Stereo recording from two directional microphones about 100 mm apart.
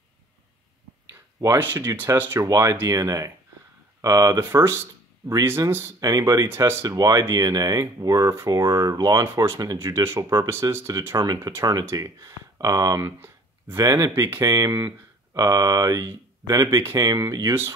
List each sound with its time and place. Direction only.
1.6 s speech: 20° right (ahead or behind)
2.4 s speech: 30° right (ahead or behind)
5.9 s speech: 35° right (ahead or behind)